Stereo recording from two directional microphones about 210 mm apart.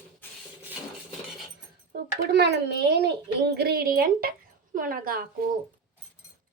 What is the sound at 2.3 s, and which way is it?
A child's voice, 50° right (ahead or behind).